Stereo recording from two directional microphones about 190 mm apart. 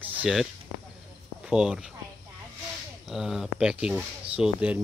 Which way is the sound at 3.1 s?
Centre (ahead or behind).